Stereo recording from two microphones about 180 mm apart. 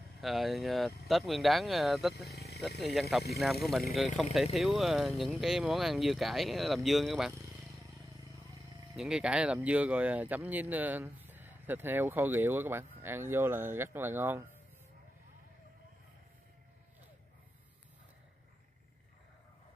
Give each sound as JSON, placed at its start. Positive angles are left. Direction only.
{"t": 0.2, "sound": "speech", "side_deg": 0}
{"t": 2.3, "sound": "a sound", "side_deg": 65}
{"t": 2.8, "sound": "speech", "side_deg": 0}
{"t": 8.9, "sound": "speech", "side_deg": -5}